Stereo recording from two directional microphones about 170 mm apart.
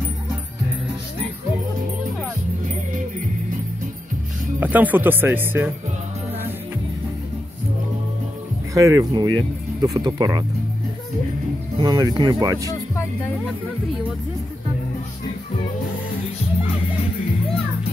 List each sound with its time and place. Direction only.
4.6 s speech: 10° right (ahead or behind)
8.7 s speech: 20° right (ahead or behind)
11.8 s speech: 25° right (ahead or behind)